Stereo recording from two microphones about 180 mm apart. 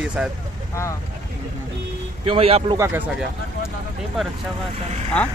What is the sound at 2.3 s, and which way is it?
Speech, 35° right (ahead or behind).